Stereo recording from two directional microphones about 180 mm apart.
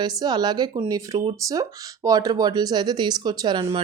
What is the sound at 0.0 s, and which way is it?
Speech, 25° right (ahead or behind).